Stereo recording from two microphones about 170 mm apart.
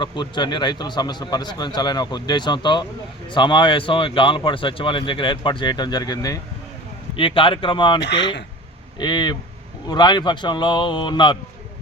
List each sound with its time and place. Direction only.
0.0 s speech: 25° left (ahead or behind)
7.2 s speech: 30° left (ahead or behind)
8.0 s speech: 90° left
9.0 s speech: 25° left (ahead or behind)